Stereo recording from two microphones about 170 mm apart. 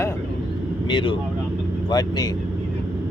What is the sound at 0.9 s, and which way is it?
Speech, 30° left (ahead or behind).